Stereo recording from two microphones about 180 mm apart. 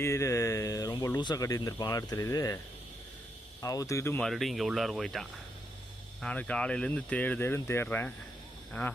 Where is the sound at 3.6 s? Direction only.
20° left (ahead or behind).